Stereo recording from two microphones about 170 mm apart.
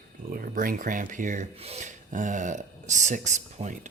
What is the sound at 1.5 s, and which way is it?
Speech, 35° right (ahead or behind).